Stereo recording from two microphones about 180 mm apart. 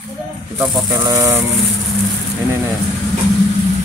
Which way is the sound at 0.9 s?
20° right (ahead or behind).